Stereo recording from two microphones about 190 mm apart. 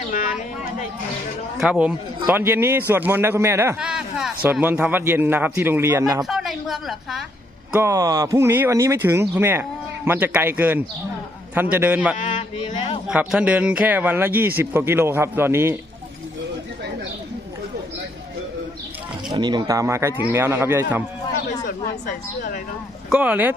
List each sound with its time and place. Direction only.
0.1 s a sound: 45° left (ahead or behind)
1.5 s a man's voice: 5° right (ahead or behind)
6.2 s a woman's voice: centre (ahead or behind)
7.7 s a man's voice: 15° right (ahead or behind)
12.1 s speech: 35° left (ahead or behind)
13.1 s a man's voice: 5° right (ahead or behind)
19.3 s a man's voice: 25° right (ahead or behind)
22.0 s speech: 45° left (ahead or behind)
23.0 s a man's voice: 5° right (ahead or behind)